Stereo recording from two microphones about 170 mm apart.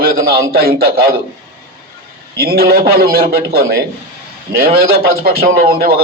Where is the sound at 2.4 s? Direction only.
65° right (ahead or behind).